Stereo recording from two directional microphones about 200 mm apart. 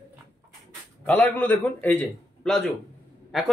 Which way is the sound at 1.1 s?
10° left (ahead or behind).